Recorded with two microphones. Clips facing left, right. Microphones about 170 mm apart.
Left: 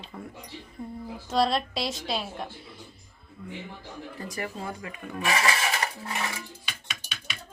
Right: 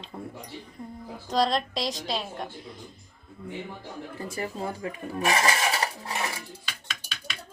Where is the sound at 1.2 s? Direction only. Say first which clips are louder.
Even; centre (ahead or behind).